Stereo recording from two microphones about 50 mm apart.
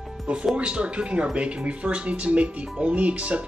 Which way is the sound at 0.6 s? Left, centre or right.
Right.